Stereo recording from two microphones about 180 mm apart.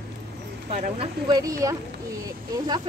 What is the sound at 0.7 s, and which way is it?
Speech, 45° right (ahead or behind).